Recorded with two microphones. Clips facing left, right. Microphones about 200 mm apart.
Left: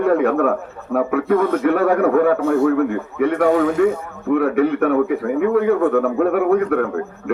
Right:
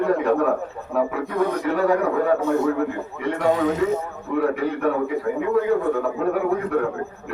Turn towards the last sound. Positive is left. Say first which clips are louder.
# left 6 dB
turn(degrees=60)  # may be behind; listen again after turning